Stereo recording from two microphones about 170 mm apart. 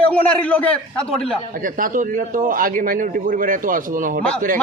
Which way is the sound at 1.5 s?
55° right (ahead or behind).